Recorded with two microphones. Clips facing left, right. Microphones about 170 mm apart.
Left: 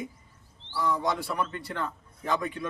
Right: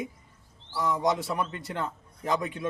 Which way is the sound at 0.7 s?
20° right (ahead or behind).